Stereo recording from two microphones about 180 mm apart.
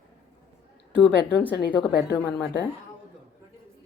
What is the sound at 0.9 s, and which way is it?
Speech, 70° left (ahead or behind).